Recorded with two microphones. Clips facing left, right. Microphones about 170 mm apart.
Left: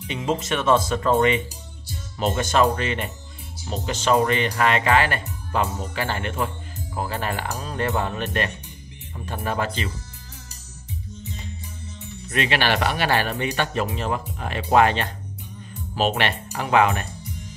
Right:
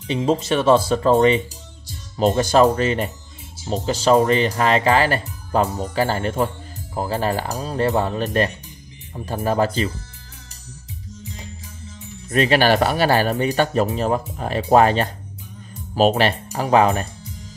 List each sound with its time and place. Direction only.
0.0 s speech: 30° right (ahead or behind)
12.3 s speech: 40° right (ahead or behind)